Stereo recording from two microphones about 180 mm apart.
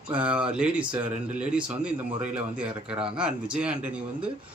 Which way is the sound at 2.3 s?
5° right (ahead or behind).